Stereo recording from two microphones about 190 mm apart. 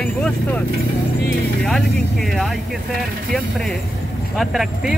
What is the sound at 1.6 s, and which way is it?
Speech, centre (ahead or behind).